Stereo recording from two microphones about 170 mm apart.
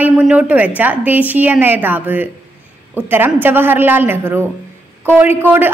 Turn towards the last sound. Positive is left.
turn(degrees=-15)  # may be behind; listen again after turning